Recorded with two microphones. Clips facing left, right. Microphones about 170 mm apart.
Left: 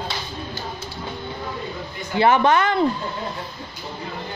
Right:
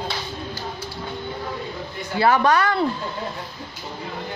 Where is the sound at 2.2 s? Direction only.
20° left (ahead or behind).